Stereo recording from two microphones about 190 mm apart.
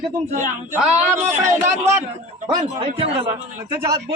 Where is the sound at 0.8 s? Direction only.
10° right (ahead or behind).